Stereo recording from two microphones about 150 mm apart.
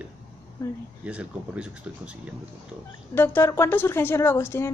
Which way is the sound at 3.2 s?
15° left (ahead or behind).